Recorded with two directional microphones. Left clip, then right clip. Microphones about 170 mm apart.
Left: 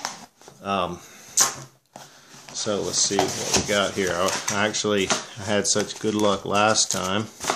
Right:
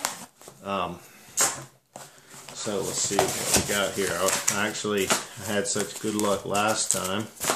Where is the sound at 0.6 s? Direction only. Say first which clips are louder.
Left 4 dB; 50° left (ahead or behind).